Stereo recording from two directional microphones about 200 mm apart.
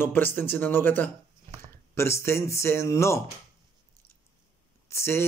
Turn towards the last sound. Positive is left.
turn(degrees=10)  # may be behind; listen again after turning